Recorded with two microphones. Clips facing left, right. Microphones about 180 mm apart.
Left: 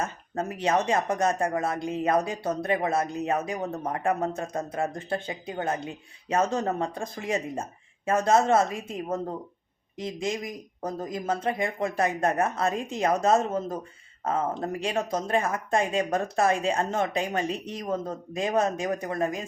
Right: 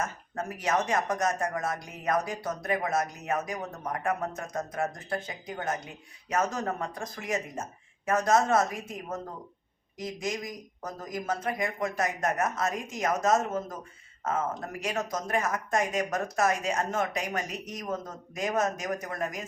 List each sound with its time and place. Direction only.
0.0 s speech: 30° left (ahead or behind)